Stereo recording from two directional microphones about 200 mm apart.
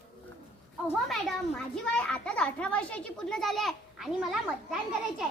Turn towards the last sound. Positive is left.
turn(degrees=0)  # may be behind; listen again after turning